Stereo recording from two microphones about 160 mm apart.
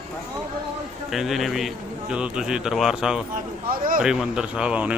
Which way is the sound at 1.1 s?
Centre (ahead or behind).